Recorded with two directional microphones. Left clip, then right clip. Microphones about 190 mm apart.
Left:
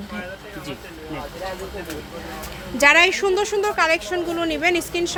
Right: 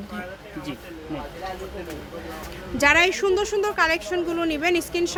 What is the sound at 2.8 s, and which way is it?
A woman's voice, 10° left (ahead or behind).